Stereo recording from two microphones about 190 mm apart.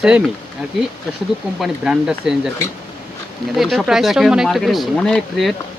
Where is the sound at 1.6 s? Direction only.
5° right (ahead or behind).